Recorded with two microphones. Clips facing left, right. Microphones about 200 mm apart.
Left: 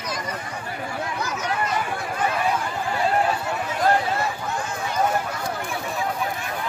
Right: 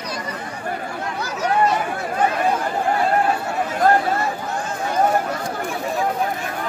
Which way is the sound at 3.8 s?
50° right (ahead or behind).